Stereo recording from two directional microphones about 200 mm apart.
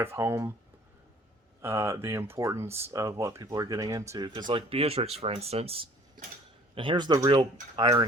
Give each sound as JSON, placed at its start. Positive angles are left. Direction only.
{"t": 0.0, "sound": "speech", "side_deg": -10}
{"t": 1.6, "sound": "speech", "side_deg": -15}